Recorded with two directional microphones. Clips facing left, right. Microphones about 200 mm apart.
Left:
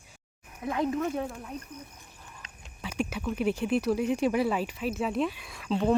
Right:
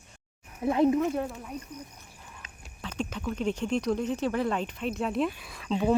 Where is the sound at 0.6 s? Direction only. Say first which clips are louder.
Right 6 dB; 25° right (ahead or behind).